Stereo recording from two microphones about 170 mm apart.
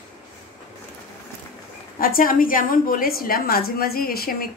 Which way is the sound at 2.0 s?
55° left (ahead or behind).